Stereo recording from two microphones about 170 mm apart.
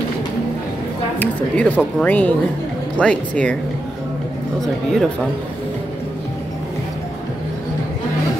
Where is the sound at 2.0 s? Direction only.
10° left (ahead or behind).